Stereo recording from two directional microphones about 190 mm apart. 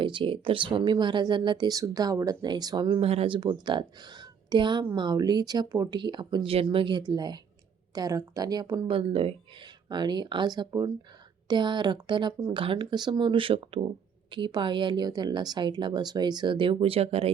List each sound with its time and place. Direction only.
0.0 s speech: 25° right (ahead or behind)
9.0 s speech: 30° right (ahead or behind)